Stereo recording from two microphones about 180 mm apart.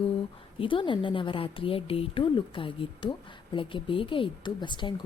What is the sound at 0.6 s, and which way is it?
A woman's voice, 30° left (ahead or behind).